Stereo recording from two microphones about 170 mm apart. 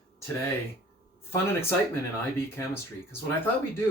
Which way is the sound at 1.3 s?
15° left (ahead or behind).